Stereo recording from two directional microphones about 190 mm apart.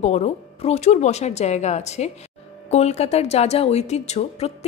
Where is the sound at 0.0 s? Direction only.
35° left (ahead or behind).